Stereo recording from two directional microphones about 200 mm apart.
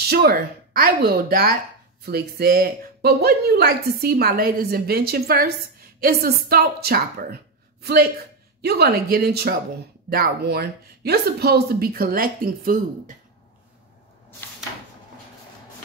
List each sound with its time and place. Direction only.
0.1 s speech: 50° right (ahead or behind)